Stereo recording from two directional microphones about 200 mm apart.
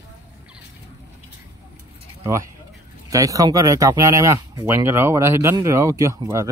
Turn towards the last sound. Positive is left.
turn(degrees=-15)  # may be behind; listen again after turning